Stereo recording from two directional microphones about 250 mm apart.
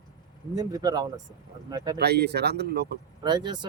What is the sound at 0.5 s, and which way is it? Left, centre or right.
Speech, centre.